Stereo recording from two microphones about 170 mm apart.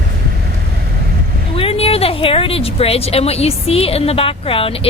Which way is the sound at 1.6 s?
35° left (ahead or behind).